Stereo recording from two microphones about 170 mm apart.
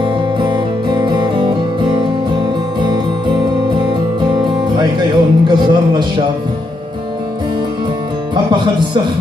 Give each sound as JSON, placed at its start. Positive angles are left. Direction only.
{"t": 0.4, "sound": "music", "side_deg": -25}
{"t": 4.7, "sound": "a man's voice", "side_deg": -25}